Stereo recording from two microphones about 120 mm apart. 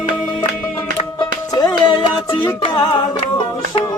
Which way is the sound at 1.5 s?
35° left (ahead or behind).